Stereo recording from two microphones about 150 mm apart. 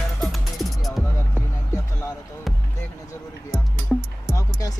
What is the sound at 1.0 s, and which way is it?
Music, 15° left (ahead or behind).